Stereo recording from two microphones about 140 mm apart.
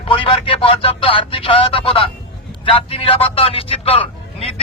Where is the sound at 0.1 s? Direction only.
40° left (ahead or behind).